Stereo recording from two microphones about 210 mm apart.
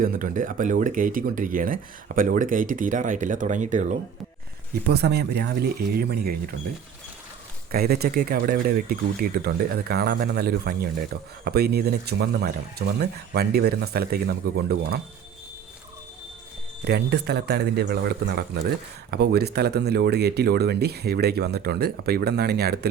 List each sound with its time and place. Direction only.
0.0 s speech: 40° right (ahead or behind)
4.9 s speech: 50° right (ahead or behind)
7.7 s speech: 50° right (ahead or behind)
16.8 s speech: 50° right (ahead or behind)